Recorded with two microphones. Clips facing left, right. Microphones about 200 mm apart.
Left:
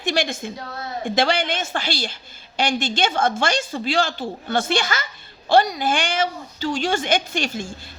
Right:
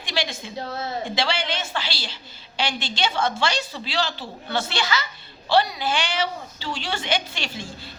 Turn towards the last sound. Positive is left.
turn(degrees=45)  # may be behind; listen again after turning